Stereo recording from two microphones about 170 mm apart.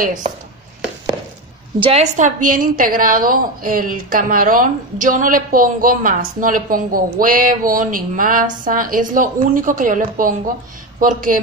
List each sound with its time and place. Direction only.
0.0 s a woman's voice: 50° right (ahead or behind)
1.8 s a woman's voice: 35° right (ahead or behind); by 11.3 s 55° right (ahead or behind)